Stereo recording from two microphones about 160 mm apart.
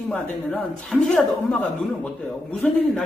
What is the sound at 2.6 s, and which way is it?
Speech, 5° left (ahead or behind).